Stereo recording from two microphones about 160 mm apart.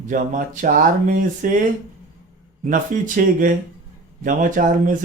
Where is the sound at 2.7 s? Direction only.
55° right (ahead or behind).